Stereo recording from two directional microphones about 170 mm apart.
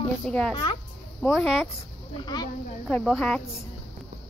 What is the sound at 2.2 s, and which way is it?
Speech, 25° left (ahead or behind).